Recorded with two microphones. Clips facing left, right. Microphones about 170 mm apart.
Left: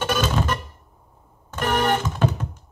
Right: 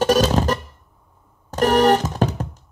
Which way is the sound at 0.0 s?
40° right (ahead or behind).